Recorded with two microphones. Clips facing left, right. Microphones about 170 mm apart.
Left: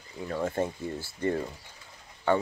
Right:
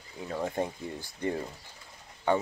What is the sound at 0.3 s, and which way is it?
Speech, 15° right (ahead or behind).